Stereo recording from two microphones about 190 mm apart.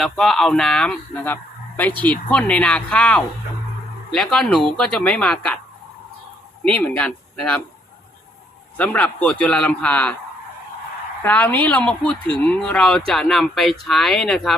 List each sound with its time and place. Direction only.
0.0 s speech: centre (ahead or behind)
6.7 s speech: 5° left (ahead or behind)
8.8 s a man's voice: 10° left (ahead or behind)
11.2 s a man's voice: 10° left (ahead or behind)